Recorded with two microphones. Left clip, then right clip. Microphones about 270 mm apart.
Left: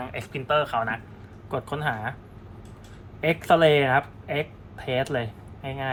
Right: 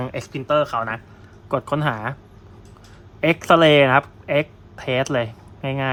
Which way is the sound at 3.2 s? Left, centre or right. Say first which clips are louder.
Right 5 dB; right.